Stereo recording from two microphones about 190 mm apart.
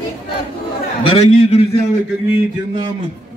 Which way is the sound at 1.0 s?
30° left (ahead or behind).